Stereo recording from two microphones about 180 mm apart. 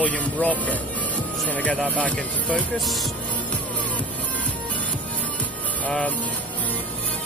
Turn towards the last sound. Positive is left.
turn(degrees=10)  # may be behind; listen again after turning